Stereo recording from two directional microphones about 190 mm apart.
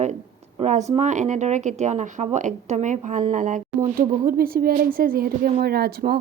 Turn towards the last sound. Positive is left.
turn(degrees=-55)  # may be behind; listen again after turning